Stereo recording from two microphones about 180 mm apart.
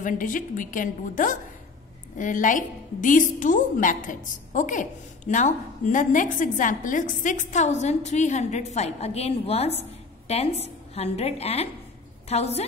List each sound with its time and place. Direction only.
0.0 s a woman's voice: 45° left (ahead or behind)